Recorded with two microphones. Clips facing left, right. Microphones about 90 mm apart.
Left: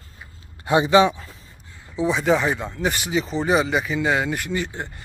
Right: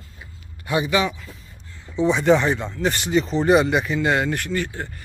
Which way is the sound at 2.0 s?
Centre (ahead or behind).